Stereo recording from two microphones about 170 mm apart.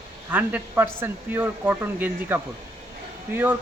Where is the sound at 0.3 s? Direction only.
10° right (ahead or behind).